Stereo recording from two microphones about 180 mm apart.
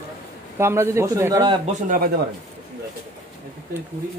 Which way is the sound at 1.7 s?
50° right (ahead or behind).